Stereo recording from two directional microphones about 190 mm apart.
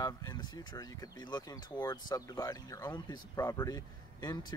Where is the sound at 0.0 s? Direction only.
20° left (ahead or behind).